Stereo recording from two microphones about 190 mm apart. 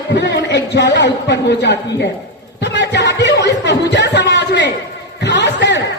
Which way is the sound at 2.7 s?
65° left (ahead or behind).